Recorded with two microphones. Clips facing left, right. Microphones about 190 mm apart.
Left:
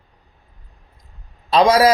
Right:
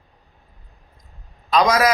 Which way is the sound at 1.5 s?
30° left (ahead or behind).